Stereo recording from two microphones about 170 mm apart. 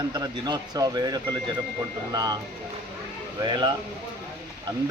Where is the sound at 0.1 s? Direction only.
25° right (ahead or behind).